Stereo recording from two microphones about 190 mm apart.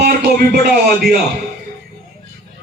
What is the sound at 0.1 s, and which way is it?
Music, 55° right (ahead or behind).